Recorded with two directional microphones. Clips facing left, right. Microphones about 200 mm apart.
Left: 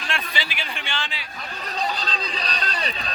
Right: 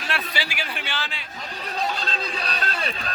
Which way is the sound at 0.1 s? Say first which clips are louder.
Right 1 dB; 10° right (ahead or behind).